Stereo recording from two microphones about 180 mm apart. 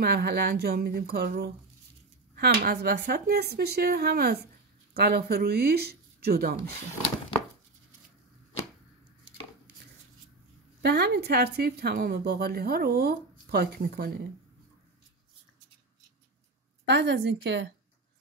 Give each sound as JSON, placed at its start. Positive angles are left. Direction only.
{"t": 0.0, "sound": "speech", "side_deg": -65}
{"t": 10.8, "sound": "speech", "side_deg": -65}
{"t": 16.8, "sound": "a woman's voice", "side_deg": -85}